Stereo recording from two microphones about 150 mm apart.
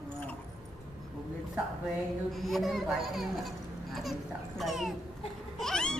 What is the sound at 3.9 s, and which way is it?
Babbling, centre (ahead or behind).